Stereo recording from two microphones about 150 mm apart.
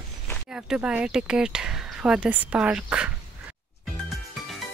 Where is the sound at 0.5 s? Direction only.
5° right (ahead or behind).